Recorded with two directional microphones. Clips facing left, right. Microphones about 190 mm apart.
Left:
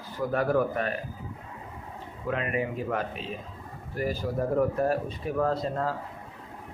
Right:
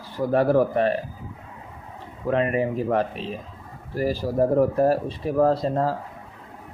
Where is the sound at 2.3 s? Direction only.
35° right (ahead or behind).